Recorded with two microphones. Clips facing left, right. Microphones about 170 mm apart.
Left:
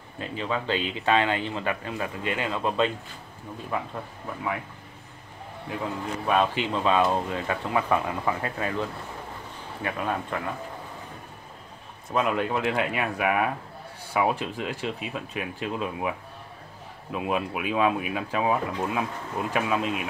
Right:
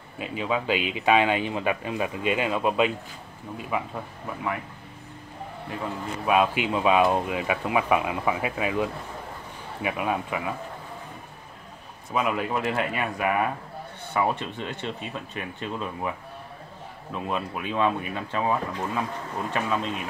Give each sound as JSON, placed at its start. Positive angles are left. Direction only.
{"t": 0.2, "sound": "speech", "side_deg": -10}
{"t": 5.7, "sound": "speech", "side_deg": 0}
{"t": 12.1, "sound": "speech", "side_deg": 0}